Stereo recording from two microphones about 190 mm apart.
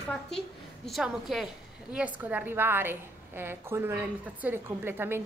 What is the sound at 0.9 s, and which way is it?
A woman's voice, centre (ahead or behind).